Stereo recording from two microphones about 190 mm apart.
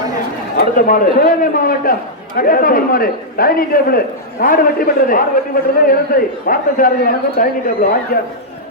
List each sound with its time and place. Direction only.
0.5 s a man's voice: 45° left (ahead or behind)